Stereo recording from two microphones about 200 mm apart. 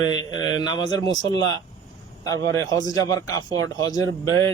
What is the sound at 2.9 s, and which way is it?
Speech, 15° left (ahead or behind).